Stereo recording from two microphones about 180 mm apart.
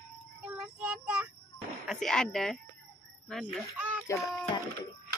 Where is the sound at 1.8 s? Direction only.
Centre (ahead or behind).